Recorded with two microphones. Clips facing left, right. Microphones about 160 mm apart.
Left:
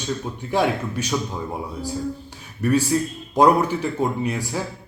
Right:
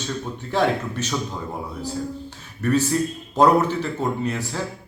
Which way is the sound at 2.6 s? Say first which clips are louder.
Left 1 dB; 10° left (ahead or behind).